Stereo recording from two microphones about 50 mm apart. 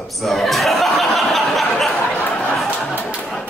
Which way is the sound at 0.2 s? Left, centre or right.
Centre.